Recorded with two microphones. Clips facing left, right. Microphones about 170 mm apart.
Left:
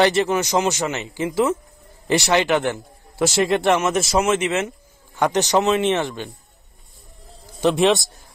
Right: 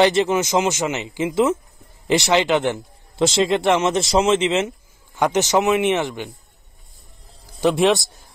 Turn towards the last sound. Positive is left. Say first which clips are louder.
# even
turn(degrees=-10)  # may be behind; listen again after turning